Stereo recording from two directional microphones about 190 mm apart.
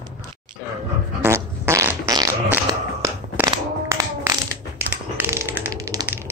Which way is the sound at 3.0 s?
15° right (ahead or behind).